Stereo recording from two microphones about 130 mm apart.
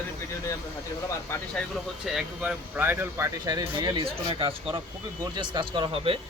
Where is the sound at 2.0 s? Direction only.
5° right (ahead or behind).